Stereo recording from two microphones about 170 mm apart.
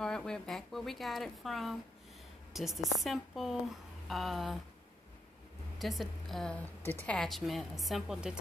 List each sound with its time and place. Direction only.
0.0 s a woman's voice: 5° left (ahead or behind)
5.8 s a woman's voice: centre (ahead or behind)